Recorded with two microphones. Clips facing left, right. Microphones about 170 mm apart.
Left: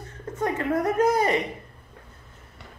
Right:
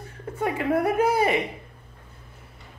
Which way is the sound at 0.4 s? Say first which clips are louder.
Right 1 dB; 10° right (ahead or behind).